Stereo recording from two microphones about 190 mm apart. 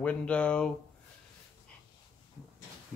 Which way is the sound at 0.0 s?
5° left (ahead or behind).